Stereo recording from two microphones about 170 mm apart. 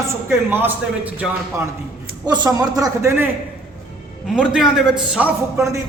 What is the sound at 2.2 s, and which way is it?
Speech, 25° right (ahead or behind).